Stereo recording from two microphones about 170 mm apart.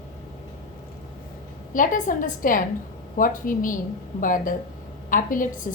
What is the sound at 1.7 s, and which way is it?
A woman's voice, 50° left (ahead or behind).